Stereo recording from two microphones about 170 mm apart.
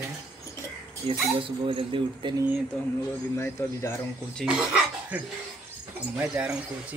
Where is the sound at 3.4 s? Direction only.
15° left (ahead or behind).